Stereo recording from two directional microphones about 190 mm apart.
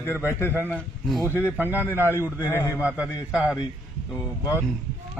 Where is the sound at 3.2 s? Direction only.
5° right (ahead or behind).